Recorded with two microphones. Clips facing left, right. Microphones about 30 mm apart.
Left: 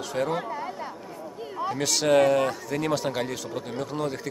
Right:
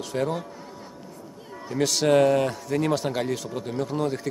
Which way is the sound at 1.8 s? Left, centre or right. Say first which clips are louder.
Right 2 dB; centre.